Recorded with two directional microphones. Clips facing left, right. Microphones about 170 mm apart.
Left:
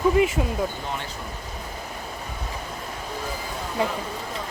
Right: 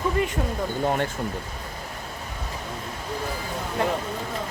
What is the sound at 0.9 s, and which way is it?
Speech, 55° right (ahead or behind).